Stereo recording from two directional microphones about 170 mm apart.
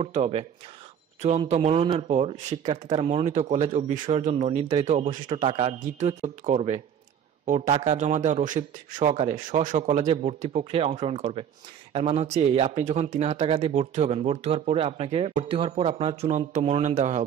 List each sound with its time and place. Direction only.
0.0 s speech: 35° right (ahead or behind)
1.5 s a man's voice: 40° right (ahead or behind)
9.5 s speech: 50° right (ahead or behind)